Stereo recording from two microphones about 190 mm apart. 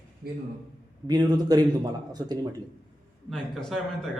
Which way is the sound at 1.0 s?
20° right (ahead or behind).